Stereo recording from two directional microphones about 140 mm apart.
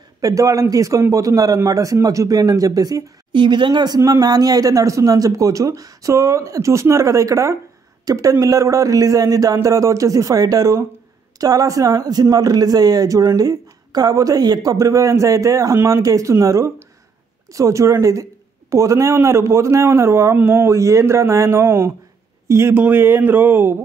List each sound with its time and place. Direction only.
0.2 s a man's voice: 25° right (ahead or behind)